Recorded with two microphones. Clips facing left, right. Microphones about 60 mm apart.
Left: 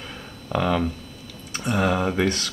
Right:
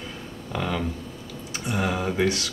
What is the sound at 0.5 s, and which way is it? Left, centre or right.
Speech, centre.